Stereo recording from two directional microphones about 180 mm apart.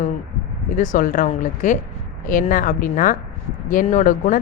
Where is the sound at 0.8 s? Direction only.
45° left (ahead or behind).